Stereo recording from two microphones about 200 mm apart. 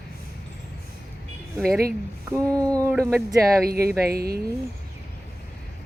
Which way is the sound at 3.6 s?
50° right (ahead or behind).